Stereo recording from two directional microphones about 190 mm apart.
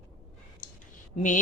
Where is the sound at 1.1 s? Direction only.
40° left (ahead or behind).